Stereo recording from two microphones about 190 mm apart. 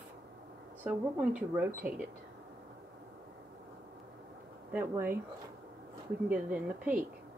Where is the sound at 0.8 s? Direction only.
5° right (ahead or behind).